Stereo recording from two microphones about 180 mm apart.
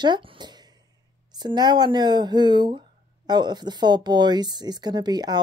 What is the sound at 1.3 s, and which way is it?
Speech, 25° right (ahead or behind).